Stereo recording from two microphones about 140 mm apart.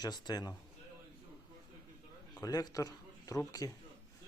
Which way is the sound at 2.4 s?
25° left (ahead or behind).